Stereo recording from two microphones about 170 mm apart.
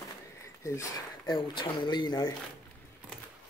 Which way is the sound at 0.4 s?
15° left (ahead or behind).